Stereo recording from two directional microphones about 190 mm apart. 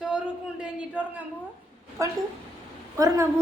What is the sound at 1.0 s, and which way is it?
A woman's voice, 5° right (ahead or behind).